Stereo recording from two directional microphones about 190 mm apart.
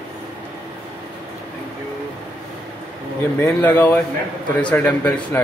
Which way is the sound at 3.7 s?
10° left (ahead or behind).